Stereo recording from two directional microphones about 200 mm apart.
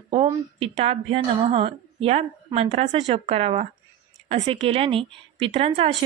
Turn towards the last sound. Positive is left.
turn(degrees=-25)  # may be behind; listen again after turning